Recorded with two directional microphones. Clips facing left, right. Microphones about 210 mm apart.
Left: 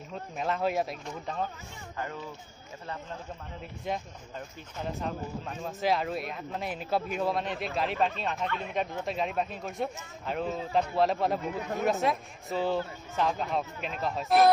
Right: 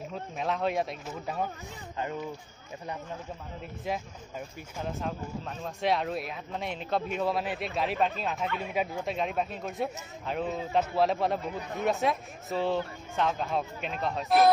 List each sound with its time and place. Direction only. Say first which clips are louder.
0.1 s speech: left 1 dB; centre (ahead or behind)
1.2 s speech: right 1 dB; 10° right (ahead or behind)
2.0 s speech: right 3 dB; 20° right (ahead or behind)
4.7 s speech: even; centre (ahead or behind)